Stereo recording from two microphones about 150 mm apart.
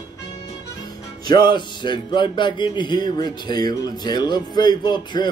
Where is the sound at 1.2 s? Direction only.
30° left (ahead or behind).